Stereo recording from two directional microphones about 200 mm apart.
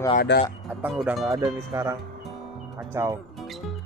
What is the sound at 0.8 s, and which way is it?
Speech, 5° right (ahead or behind).